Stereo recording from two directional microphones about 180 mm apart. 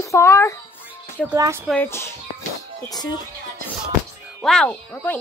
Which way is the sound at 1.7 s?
10° left (ahead or behind).